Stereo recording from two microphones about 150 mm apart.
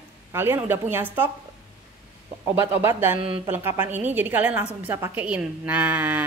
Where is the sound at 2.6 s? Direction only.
15° right (ahead or behind).